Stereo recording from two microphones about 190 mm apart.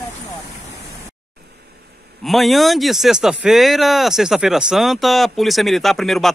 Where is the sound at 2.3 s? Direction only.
Centre (ahead or behind).